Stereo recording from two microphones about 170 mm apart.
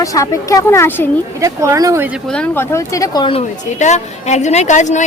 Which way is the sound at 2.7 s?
20° left (ahead or behind).